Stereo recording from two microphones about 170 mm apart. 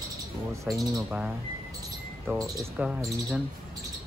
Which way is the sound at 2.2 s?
20° right (ahead or behind).